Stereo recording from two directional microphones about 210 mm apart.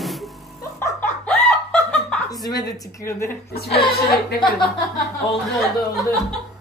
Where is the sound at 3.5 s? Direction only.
50° left (ahead or behind).